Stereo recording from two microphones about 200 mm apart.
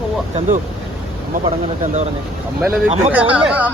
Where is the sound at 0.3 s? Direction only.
40° right (ahead or behind).